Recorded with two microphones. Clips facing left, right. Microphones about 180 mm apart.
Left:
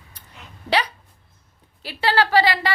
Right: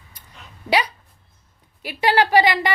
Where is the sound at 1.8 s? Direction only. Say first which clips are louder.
Right 2 dB; 15° right (ahead or behind).